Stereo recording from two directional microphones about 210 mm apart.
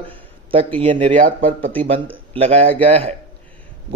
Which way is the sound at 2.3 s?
30° right (ahead or behind).